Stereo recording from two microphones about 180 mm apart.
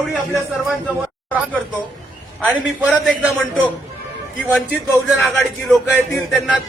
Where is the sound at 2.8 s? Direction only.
5° right (ahead or behind).